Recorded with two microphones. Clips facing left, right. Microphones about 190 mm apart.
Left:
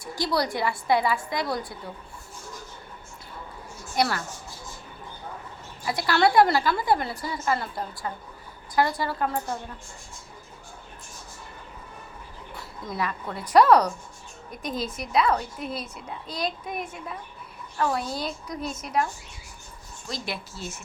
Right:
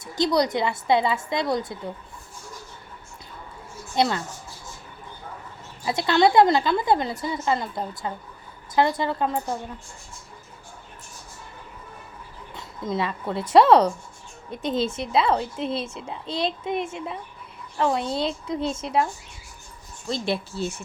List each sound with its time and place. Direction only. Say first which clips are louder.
0.0 s a woman's voice: right 5 dB; 20° right (ahead or behind)
3.9 s a woman's voice: right 3 dB; 20° right (ahead or behind)
5.8 s a woman's voice: right 3 dB; 25° right (ahead or behind)
12.5 s a woman's voice: right 4 dB; 20° right (ahead or behind)
20.1 s a woman's voice: right 8 dB; 30° right (ahead or behind)